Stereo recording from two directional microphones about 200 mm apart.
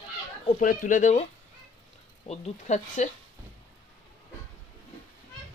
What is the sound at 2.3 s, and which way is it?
Speech, 35° left (ahead or behind).